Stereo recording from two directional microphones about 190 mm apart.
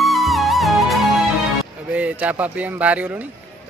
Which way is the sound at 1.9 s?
5° right (ahead or behind).